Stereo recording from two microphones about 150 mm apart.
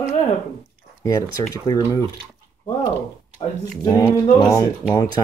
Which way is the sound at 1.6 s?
25° left (ahead or behind).